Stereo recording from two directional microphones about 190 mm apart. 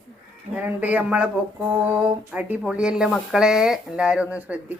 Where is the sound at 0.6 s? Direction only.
10° right (ahead or behind).